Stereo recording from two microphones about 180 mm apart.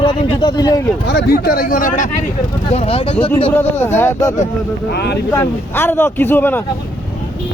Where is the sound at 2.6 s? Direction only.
35° left (ahead or behind).